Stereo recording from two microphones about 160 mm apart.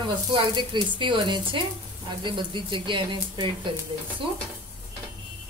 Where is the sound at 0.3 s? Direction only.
30° right (ahead or behind).